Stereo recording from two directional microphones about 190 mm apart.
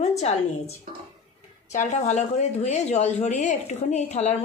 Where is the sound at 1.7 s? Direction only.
40° left (ahead or behind).